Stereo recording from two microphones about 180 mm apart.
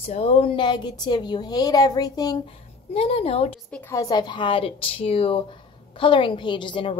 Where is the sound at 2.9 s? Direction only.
35° left (ahead or behind).